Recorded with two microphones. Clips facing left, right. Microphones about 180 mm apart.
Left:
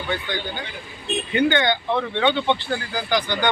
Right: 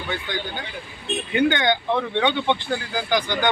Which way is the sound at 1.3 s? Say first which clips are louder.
Even; 10° right (ahead or behind).